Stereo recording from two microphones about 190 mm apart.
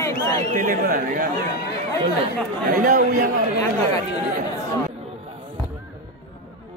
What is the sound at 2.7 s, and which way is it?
Speech, 50° right (ahead or behind).